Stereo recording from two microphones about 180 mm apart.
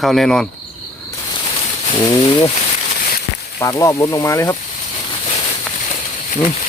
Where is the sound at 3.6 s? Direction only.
20° left (ahead or behind).